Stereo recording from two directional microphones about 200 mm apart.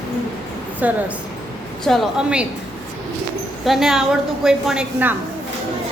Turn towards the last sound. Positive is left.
turn(degrees=-5)  # may be behind; listen again after turning